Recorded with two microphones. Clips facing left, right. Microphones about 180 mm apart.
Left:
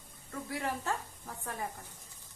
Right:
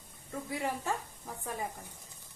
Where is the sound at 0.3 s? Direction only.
15° right (ahead or behind).